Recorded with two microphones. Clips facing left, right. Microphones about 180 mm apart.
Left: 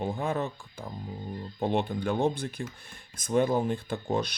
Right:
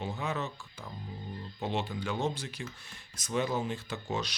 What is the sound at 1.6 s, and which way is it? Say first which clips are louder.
Speech: left 6 dB; 55° left (ahead or behind).